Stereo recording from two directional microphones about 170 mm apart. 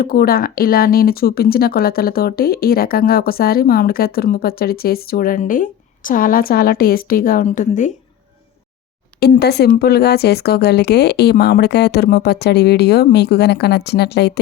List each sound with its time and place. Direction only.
0.0 s speech: 60° left (ahead or behind)
9.4 s speech: 70° left (ahead or behind)